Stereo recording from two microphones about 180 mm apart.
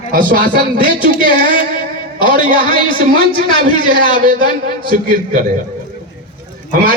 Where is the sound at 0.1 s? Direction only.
50° right (ahead or behind).